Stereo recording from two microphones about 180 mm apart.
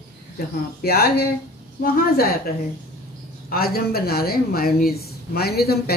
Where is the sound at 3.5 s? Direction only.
55° left (ahead or behind).